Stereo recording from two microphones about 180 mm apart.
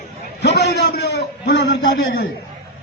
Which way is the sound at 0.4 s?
65° left (ahead or behind).